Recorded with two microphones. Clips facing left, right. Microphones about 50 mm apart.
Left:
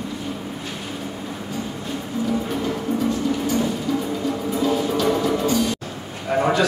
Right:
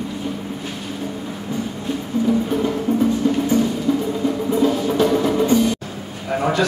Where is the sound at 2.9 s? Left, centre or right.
Right.